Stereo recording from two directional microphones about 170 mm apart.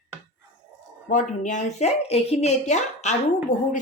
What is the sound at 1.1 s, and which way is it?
Speech, 45° left (ahead or behind).